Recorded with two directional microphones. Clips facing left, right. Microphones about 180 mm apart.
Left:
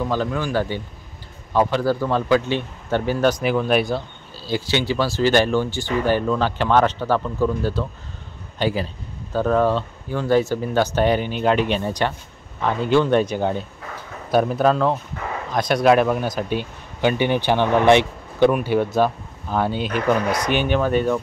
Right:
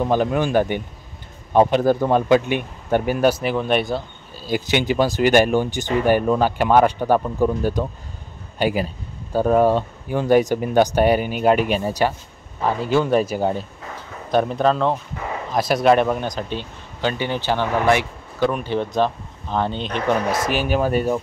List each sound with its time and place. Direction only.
0.1 s speech: 20° right (ahead or behind); by 4.0 s centre (ahead or behind)
4.4 s speech: 15° right (ahead or behind)
7.2 s speech: 25° right (ahead or behind); by 18.5 s 25° left (ahead or behind)
18.5 s speech: 10° left (ahead or behind)
20.4 s speech: 5° right (ahead or behind)